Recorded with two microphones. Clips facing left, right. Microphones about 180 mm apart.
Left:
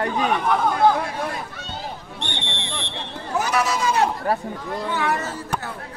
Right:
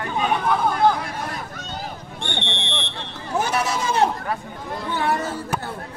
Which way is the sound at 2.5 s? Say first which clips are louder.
Right 1 dB; 20° right (ahead or behind).